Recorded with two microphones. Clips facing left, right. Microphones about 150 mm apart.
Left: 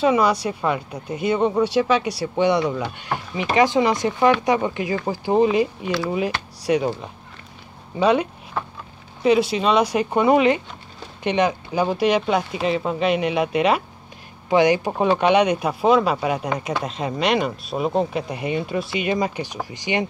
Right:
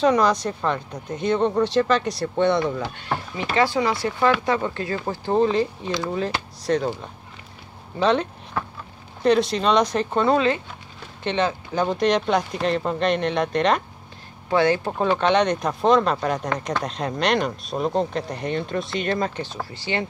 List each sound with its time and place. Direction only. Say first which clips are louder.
0.0 s speech: left 1 dB; 5° left (ahead or behind)